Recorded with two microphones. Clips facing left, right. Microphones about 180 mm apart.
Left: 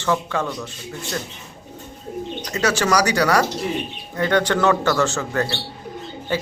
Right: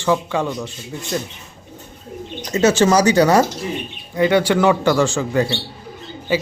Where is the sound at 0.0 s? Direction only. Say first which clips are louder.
Right 3 dB; 15° right (ahead or behind).